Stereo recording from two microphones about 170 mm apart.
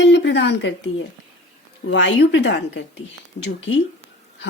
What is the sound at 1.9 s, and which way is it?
Speech, 90° left.